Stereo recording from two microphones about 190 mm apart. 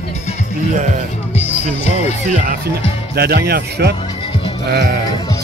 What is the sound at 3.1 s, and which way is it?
Speech, 55° right (ahead or behind).